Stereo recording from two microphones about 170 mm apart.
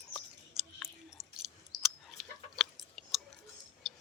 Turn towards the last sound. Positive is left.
turn(degrees=0)  # may be behind; listen again after turning